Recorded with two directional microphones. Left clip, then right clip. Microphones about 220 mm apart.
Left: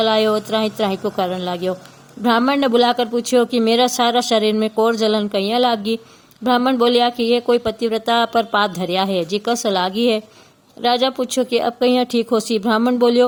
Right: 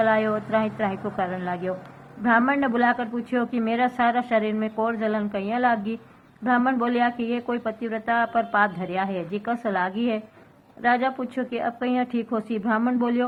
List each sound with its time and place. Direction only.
0.0 s a woman's voice: 65° left (ahead or behind)